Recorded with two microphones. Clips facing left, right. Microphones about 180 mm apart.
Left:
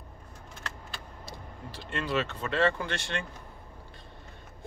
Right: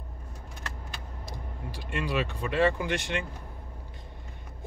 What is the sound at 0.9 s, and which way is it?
Speech, 15° right (ahead or behind).